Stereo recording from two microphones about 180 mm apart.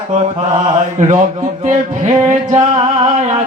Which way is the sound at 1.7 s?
45° right (ahead or behind).